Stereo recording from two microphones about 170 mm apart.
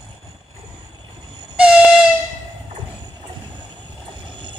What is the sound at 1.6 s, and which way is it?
Air horn, 5° right (ahead or behind).